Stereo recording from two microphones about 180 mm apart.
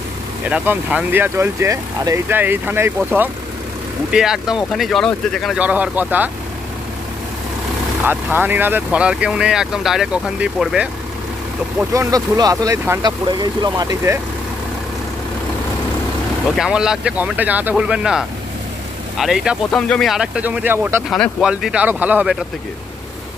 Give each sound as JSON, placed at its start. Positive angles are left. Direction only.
{"t": 0.5, "sound": "speech", "side_deg": -5}
{"t": 8.0, "sound": "speech", "side_deg": -10}
{"t": 11.9, "sound": "speech", "side_deg": -20}
{"t": 16.5, "sound": "speech", "side_deg": -5}
{"t": 21.1, "sound": "speech", "side_deg": 0}